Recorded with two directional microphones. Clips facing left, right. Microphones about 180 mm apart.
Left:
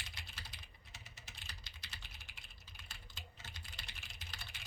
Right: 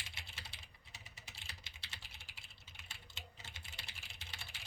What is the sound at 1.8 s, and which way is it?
Typing, 30° right (ahead or behind).